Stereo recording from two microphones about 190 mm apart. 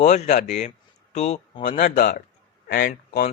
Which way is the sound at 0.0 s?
40° left (ahead or behind).